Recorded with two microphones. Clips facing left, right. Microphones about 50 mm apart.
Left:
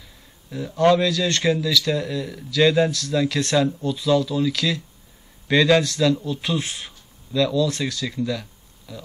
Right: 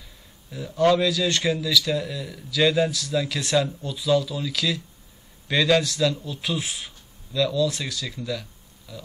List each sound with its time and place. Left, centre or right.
0.5 s speech: centre